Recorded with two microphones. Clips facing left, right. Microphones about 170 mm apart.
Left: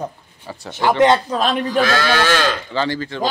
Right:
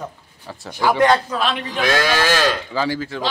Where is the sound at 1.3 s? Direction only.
40° left (ahead or behind).